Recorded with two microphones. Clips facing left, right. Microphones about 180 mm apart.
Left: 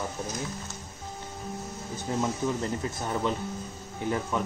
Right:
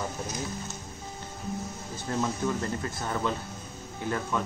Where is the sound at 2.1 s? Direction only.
15° left (ahead or behind).